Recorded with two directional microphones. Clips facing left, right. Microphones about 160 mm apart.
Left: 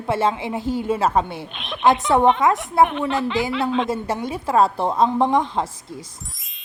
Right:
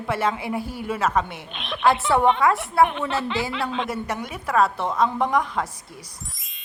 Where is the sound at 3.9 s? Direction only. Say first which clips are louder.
Left 4 dB; 25° left (ahead or behind).